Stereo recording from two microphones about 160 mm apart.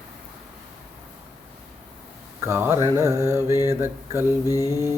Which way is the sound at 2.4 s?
15° right (ahead or behind).